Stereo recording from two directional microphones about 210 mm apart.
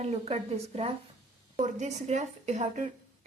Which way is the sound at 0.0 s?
30° right (ahead or behind).